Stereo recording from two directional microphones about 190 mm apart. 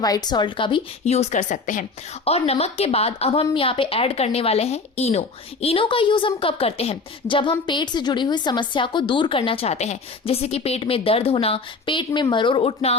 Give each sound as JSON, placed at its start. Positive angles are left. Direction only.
{"t": 0.0, "sound": "a woman's voice", "side_deg": 20}